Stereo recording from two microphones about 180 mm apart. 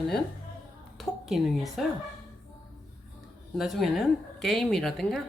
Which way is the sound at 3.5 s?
Centre (ahead or behind).